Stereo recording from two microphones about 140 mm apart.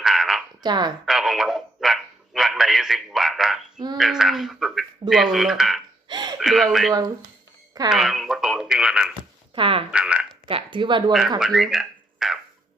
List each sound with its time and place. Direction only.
0.0 s frog: centre (ahead or behind)
0.6 s speech: 30° right (ahead or behind)
1.0 s dog: centre (ahead or behind)
3.9 s speech: centre (ahead or behind)
6.1 s a sound: 30° right (ahead or behind)
6.4 s speech: centre (ahead or behind)
7.7 s speech: 30° right (ahead or behind)
7.9 s speech: centre (ahead or behind)
9.6 s speech: 40° right (ahead or behind)
9.9 s speech: 10° right (ahead or behind)
10.5 s speech: 35° right (ahead or behind)
11.3 s speech: 5° right (ahead or behind)